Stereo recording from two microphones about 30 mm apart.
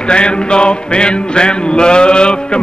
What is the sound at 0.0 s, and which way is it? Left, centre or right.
Music, left.